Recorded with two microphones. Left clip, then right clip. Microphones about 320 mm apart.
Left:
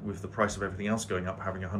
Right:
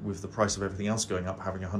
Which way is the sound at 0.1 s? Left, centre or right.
Centre.